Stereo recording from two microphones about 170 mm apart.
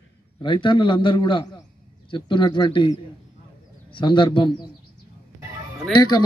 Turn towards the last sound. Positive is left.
turn(degrees=25)  # may be behind; listen again after turning